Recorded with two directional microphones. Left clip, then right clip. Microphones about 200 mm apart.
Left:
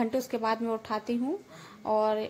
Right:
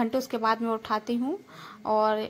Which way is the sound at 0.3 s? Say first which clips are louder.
Right 3 dB; centre (ahead or behind).